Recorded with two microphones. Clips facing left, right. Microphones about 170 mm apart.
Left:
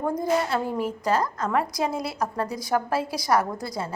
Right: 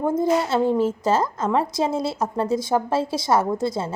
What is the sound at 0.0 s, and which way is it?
A woman's voice, 25° right (ahead or behind).